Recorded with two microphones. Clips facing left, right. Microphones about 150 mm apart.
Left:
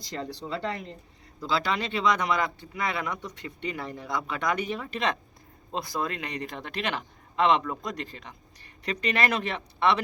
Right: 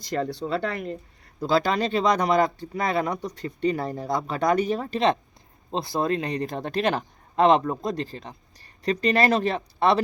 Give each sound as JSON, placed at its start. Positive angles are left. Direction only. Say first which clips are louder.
{"t": 0.0, "sound": "speech", "louder": "right 8 dB", "side_deg": -50}
{"t": 1.4, "sound": "speech", "louder": "right 6 dB", "side_deg": -45}